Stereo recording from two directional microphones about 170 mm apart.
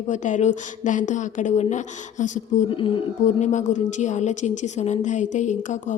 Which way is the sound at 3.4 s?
45° left (ahead or behind).